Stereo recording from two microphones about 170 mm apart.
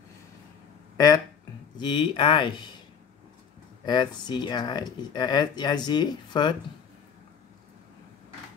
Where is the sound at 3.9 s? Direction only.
25° left (ahead or behind).